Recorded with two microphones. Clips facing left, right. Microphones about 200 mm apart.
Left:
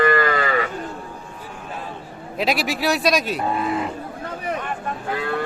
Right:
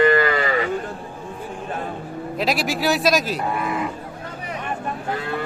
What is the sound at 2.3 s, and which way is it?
A man's voice, centre (ahead or behind).